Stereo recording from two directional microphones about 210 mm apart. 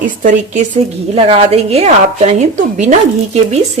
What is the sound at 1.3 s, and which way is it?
Speech, 30° right (ahead or behind).